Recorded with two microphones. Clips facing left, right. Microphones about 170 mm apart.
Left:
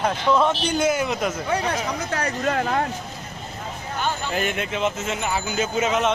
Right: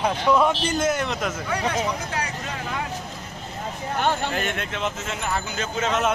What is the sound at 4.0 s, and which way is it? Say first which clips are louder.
Speech: right 3 dB; 65° right (ahead or behind).